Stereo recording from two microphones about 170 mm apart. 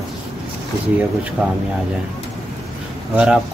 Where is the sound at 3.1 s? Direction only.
5° right (ahead or behind).